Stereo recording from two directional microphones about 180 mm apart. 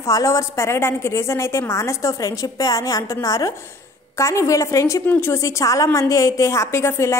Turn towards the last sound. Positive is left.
turn(degrees=15)  # may be behind; listen again after turning